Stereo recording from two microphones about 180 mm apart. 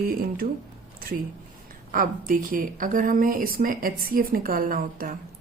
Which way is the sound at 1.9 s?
50° right (ahead or behind).